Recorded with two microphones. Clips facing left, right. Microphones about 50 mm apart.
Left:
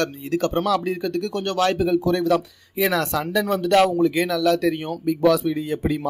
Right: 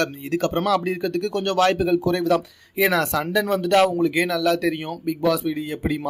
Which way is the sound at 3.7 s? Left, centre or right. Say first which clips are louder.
Left 1 dB; centre.